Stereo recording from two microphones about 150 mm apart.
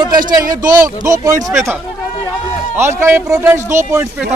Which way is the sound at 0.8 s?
20° right (ahead or behind).